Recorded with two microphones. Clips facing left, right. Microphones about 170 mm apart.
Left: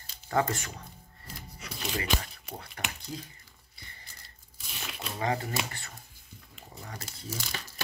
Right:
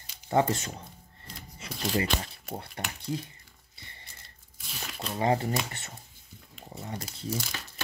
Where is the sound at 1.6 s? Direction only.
30° right (ahead or behind).